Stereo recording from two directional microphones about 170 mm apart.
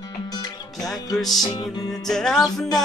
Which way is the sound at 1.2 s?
Centre (ahead or behind).